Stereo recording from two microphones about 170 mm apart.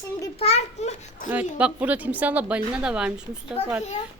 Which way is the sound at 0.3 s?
40° left (ahead or behind).